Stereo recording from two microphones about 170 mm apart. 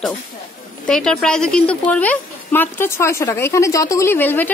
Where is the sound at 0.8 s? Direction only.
5° left (ahead or behind).